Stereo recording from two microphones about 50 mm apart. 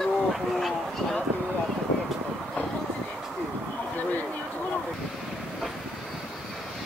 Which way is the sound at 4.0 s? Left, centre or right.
Left.